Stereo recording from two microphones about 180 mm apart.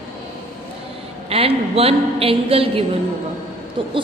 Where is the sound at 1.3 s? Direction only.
35° right (ahead or behind).